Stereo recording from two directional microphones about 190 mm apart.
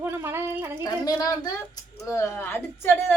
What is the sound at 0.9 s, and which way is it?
A woman's voice, 20° left (ahead or behind).